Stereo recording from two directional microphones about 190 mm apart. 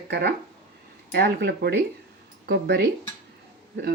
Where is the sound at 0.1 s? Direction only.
60° right (ahead or behind).